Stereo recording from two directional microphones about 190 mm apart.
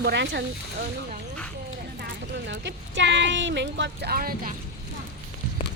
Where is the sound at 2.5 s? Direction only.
70° right (ahead or behind); by 4.5 s 50° right (ahead or behind).